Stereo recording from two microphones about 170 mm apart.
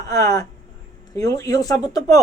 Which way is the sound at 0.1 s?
20° left (ahead or behind).